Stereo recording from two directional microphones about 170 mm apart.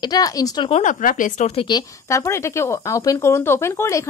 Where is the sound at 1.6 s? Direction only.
20° left (ahead or behind).